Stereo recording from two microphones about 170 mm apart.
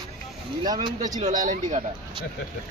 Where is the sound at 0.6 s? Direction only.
25° right (ahead or behind).